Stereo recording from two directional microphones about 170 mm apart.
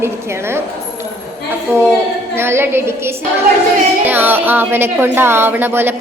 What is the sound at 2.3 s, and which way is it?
Speech, 15° right (ahead or behind).